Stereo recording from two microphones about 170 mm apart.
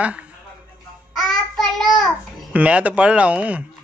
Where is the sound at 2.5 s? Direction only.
10° right (ahead or behind).